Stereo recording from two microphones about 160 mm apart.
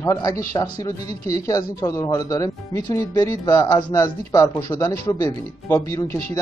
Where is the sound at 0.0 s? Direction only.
20° left (ahead or behind).